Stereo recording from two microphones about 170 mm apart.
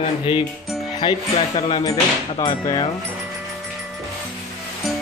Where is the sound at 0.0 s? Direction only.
30° left (ahead or behind).